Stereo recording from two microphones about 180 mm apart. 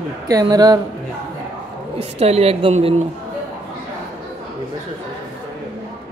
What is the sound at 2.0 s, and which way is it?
Speech, 35° right (ahead or behind).